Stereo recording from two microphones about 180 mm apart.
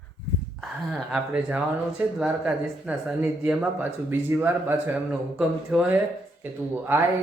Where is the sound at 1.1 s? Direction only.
5° right (ahead or behind).